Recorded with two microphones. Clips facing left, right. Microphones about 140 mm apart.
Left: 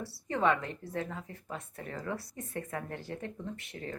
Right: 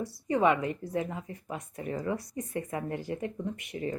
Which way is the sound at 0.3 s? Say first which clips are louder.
Right 4 dB; 15° right (ahead or behind).